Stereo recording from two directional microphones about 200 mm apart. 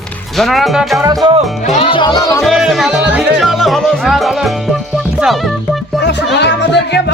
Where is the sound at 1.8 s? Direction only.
25° left (ahead or behind).